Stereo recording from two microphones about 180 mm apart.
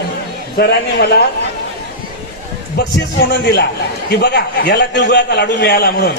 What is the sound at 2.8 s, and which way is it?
A man's voice, 70° left (ahead or behind).